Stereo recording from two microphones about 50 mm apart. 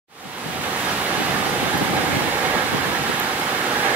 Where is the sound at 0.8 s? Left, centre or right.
Right.